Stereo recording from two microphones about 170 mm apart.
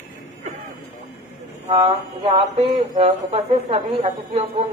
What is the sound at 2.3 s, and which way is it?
A woman's voice, 40° right (ahead or behind).